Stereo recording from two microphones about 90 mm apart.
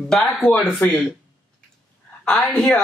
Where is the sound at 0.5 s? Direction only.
15° left (ahead or behind).